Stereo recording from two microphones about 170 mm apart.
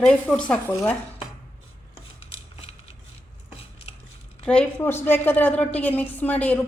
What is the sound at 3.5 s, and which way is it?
Dishes, 35° left (ahead or behind).